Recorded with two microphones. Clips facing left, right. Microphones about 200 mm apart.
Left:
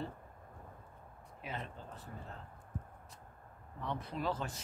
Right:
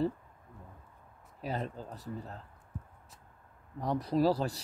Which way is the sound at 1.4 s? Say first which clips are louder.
Right 8 dB; 40° right (ahead or behind).